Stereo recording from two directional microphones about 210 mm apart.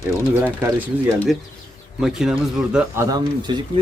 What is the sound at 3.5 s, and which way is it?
Speech, 20° right (ahead or behind).